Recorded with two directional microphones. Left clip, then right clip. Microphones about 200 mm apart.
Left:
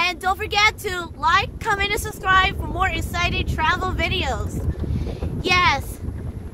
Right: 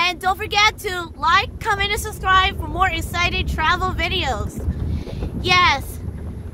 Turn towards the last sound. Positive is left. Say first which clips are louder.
# right 2 dB
turn(degrees=-15)  # may be behind; listen again after turning